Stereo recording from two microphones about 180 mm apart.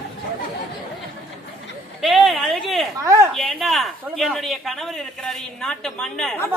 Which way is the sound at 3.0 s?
15° right (ahead or behind).